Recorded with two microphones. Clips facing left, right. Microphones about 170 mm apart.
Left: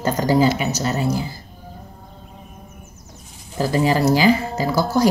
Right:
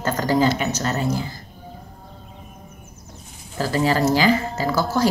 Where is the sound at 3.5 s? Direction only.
15° left (ahead or behind).